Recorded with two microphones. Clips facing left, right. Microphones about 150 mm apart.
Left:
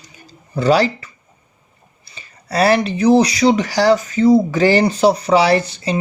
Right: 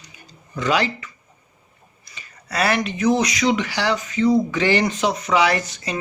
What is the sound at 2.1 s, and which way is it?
Speech, 30° left (ahead or behind).